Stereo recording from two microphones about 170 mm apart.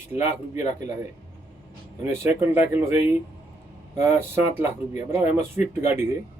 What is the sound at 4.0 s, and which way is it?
Speech, 15° right (ahead or behind).